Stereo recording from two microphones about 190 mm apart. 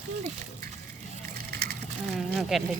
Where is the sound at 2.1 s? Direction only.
Centre (ahead or behind).